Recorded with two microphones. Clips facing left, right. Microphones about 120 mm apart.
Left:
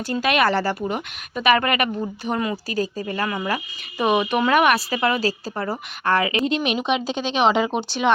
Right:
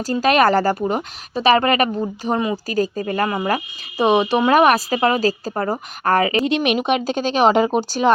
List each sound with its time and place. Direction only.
0.1 s a woman's voice: 40° right (ahead or behind)
2.6 s a woman's voice: 45° right (ahead or behind)
6.4 s speech: 70° right (ahead or behind); by 8.1 s 40° right (ahead or behind)